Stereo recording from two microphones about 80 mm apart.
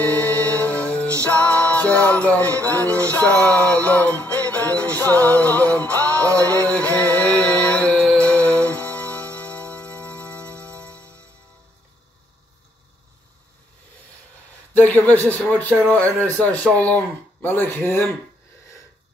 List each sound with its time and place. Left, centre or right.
0.3 s music: centre
2.7 s music: right
3.3 s speech: centre
4.5 s music: left
14.7 s speech: centre